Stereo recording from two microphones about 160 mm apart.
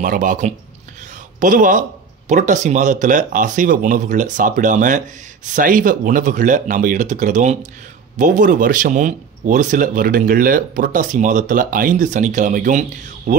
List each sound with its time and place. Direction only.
0.0 s speech: 55° right (ahead or behind)